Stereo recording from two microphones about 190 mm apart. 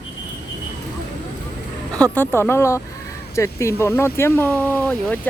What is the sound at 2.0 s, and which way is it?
Speech, 10° left (ahead or behind).